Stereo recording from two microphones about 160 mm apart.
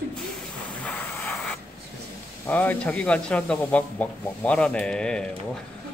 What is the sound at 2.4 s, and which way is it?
Speech, 10° left (ahead or behind).